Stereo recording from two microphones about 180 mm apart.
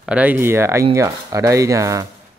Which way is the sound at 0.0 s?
10° right (ahead or behind).